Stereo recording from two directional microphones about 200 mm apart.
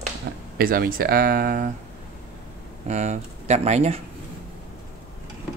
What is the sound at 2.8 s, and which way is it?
Speech, 35° right (ahead or behind).